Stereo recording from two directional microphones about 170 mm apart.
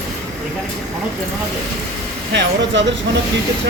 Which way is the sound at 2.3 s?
90° right.